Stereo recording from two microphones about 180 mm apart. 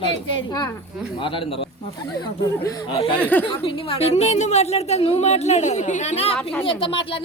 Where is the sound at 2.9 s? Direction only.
30° left (ahead or behind).